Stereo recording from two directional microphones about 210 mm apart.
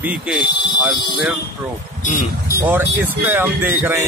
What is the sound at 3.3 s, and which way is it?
Speech, 10° right (ahead or behind).